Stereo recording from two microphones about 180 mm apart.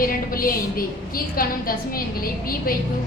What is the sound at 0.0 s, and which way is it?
A woman's voice, 55° left (ahead or behind).